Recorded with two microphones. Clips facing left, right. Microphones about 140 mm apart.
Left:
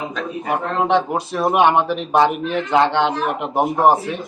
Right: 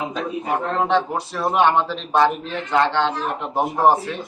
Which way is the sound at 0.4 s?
15° left (ahead or behind).